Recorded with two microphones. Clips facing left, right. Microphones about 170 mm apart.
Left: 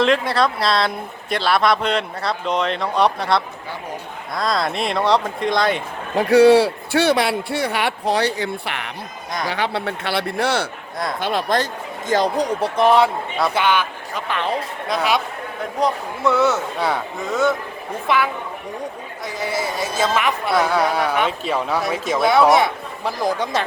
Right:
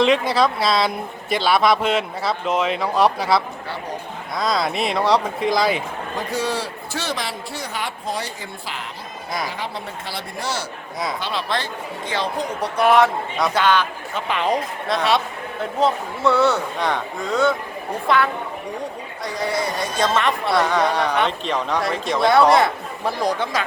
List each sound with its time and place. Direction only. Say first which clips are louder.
0.0 s speech: even; centre (ahead or behind)
6.1 s a man's voice: left 14 dB; 65° left (ahead or behind)
11.2 s speech: left 5 dB; 50° left (ahead or behind)
12.5 s speech: left 3 dB; 30° left (ahead or behind)
13.0 s speech: even; 5° left (ahead or behind)
14.5 s speech: right 1 dB; 5° left (ahead or behind)
16.2 s speech: even; centre (ahead or behind)
19.2 s speech: right 1 dB; centre (ahead or behind)